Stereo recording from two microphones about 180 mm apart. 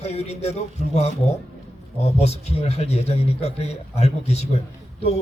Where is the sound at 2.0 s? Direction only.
35° left (ahead or behind).